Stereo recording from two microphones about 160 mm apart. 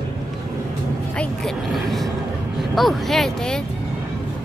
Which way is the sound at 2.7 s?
Centre (ahead or behind).